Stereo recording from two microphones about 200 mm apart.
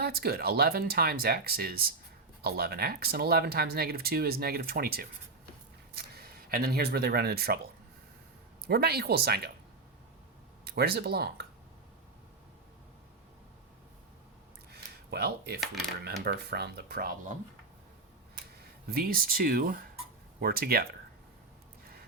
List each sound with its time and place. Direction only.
0.0 s speech: 50° right (ahead or behind)
10.7 s speech: 50° right (ahead or behind)
14.7 s a sound: 50° right (ahead or behind)
16.2 s speech: 55° right (ahead or behind)
18.9 s speech: 50° right (ahead or behind)